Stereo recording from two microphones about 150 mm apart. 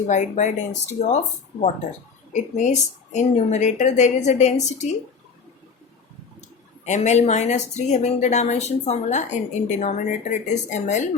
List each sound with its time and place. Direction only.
0.1 s speech: 55° left (ahead or behind)
2.3 s speech: 55° left (ahead or behind)
6.8 s speech: 50° left (ahead or behind)